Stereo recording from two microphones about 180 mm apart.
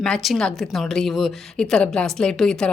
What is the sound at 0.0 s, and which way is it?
A woman's voice, centre (ahead or behind).